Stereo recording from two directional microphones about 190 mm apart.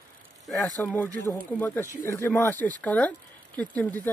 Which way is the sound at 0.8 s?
10° left (ahead or behind).